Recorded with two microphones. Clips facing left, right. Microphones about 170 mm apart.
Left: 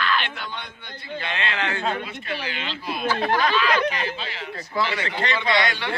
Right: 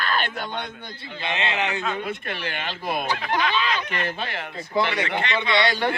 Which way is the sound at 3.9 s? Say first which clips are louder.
Right 1 dB; 55° right (ahead or behind).